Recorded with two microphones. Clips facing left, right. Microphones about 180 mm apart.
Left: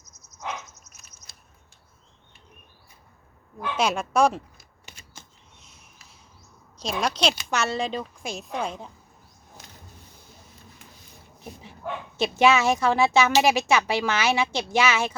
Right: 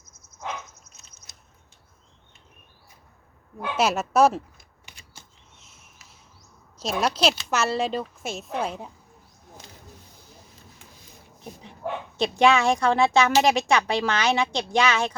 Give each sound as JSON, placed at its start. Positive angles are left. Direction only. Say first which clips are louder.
{"t": 0.0, "sound": "a sound", "louder": "even", "side_deg": -55}
{"t": 1.3, "sound": "scissors", "louder": "even", "side_deg": -20}
{"t": 3.8, "sound": "speech", "louder": "right 2 dB", "side_deg": -5}
{"t": 4.9, "sound": "typewriter", "louder": "left 2 dB", "side_deg": -15}
{"t": 6.7, "sound": "speech", "louder": "right 2 dB", "side_deg": -5}
{"t": 11.4, "sound": "speech", "louder": "right 2 dB", "side_deg": 5}